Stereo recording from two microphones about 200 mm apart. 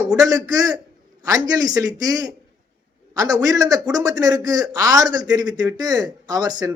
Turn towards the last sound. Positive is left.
turn(degrees=-20)  # may be behind; listen again after turning